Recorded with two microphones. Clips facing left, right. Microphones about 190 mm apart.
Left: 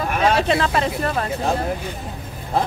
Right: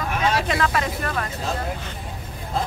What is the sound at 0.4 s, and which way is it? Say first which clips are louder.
Speech: left 4 dB; 30° left (ahead or behind).